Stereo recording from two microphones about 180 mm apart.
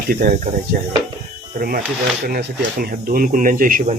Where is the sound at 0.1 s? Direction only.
55° right (ahead or behind).